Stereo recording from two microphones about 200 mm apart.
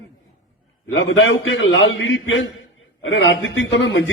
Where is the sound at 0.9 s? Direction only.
70° left (ahead or behind).